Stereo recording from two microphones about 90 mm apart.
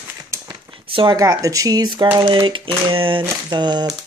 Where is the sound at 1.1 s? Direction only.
40° right (ahead or behind).